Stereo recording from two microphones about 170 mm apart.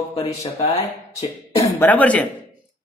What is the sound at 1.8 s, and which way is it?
Speech, 10° left (ahead or behind).